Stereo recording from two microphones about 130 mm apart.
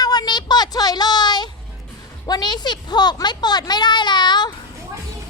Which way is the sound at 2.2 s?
30° left (ahead or behind).